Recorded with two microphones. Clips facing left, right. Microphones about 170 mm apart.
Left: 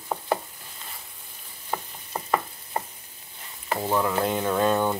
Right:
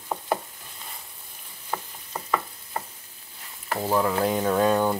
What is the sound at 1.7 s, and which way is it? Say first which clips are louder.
Stir: left 1 dB; 15° left (ahead or behind).